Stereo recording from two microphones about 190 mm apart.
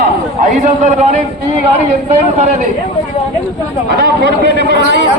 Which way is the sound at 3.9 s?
60° right (ahead or behind).